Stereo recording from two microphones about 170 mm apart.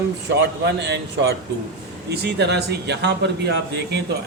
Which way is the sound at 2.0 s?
80° right.